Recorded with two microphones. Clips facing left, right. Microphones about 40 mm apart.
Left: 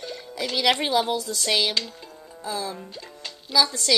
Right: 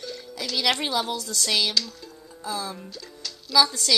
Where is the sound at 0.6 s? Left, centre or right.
Centre.